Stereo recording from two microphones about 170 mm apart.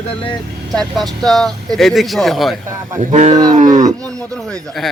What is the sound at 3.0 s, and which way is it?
Speech, 45° right (ahead or behind).